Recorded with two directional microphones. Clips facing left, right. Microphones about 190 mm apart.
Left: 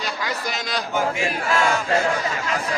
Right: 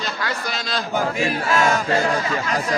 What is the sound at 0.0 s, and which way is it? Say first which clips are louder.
Speech: right 1 dB; 10° left (ahead or behind).